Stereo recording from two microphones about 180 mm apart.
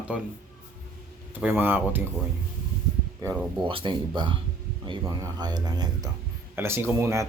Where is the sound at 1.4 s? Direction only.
10° right (ahead or behind).